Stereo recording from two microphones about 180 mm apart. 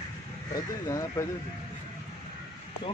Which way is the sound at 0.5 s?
20° left (ahead or behind).